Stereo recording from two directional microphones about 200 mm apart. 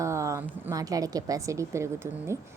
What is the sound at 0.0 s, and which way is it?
A woman's voice, 15° right (ahead or behind).